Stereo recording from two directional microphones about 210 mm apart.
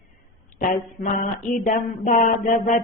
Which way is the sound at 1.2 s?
40° left (ahead or behind).